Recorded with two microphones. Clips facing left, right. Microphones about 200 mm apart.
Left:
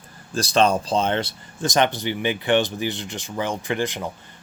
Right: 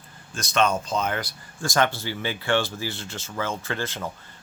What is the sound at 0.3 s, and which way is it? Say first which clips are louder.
Speech: left 4 dB; 35° left (ahead or behind).